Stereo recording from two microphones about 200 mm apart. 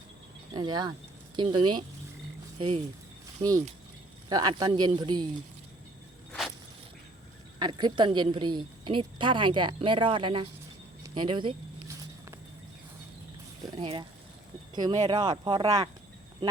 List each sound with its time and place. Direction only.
0.5 s a woman's voice: 20° right (ahead or behind)
4.3 s a woman's voice: 20° right (ahead or behind)
7.6 s a woman's voice: 20° right (ahead or behind)
11.0 s a sound: 25° right (ahead or behind)
13.6 s a sound: 25° right (ahead or behind)
14.8 s a woman's voice: 20° right (ahead or behind)